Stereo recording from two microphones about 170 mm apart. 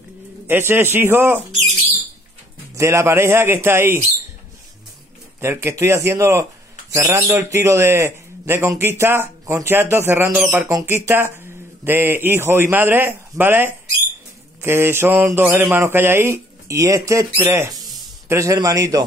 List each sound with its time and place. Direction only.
0.5 s a man's voice: 10° right (ahead or behind)
2.7 s a man's voice: 15° right (ahead or behind)
5.4 s a man's voice: 15° right (ahead or behind)